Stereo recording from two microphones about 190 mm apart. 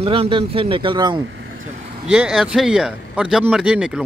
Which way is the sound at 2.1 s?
5° right (ahead or behind).